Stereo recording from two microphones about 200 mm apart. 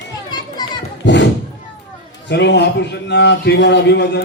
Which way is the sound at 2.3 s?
60° left (ahead or behind).